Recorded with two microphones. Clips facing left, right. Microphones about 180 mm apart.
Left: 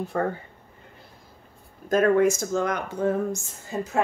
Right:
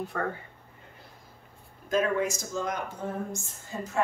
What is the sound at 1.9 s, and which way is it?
A woman's voice, 50° left (ahead or behind).